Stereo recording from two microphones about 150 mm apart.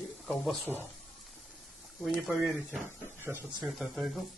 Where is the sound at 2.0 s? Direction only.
Centre (ahead or behind).